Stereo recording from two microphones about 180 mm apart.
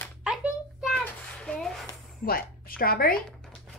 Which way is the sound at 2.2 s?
55° left (ahead or behind).